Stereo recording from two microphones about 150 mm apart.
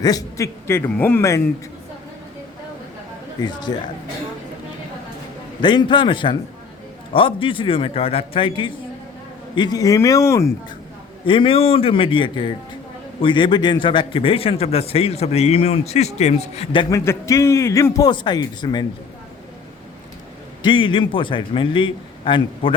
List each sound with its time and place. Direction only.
0.0 s a man's voice: 25° left (ahead or behind)
3.4 s a man's voice: 25° left (ahead or behind)
5.6 s a man's voice: 30° left (ahead or behind)
11.3 s a man's voice: 35° left (ahead or behind)
16.9 s a man's voice: 20° left (ahead or behind)
20.6 s a man's voice: 35° left (ahead or behind)